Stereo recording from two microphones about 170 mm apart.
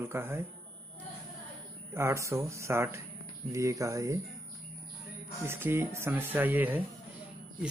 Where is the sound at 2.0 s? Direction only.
15° right (ahead or behind).